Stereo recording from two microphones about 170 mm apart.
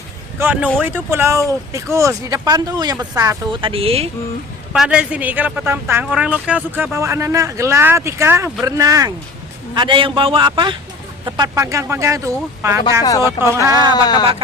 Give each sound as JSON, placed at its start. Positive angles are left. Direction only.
{"t": 0.3, "sound": "speech", "side_deg": -10}
{"t": 4.7, "sound": "speech", "side_deg": -5}
{"t": 13.0, "sound": "speech", "side_deg": 20}